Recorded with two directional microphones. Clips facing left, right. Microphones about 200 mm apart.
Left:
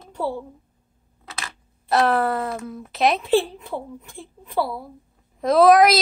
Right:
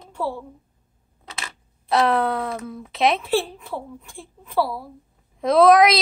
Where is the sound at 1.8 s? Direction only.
Centre (ahead or behind).